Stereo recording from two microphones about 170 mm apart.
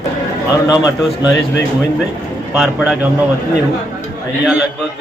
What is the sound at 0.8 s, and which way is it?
Speech, 5° right (ahead or behind).